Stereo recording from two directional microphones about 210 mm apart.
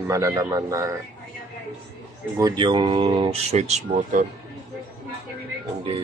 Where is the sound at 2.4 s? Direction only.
20° right (ahead or behind).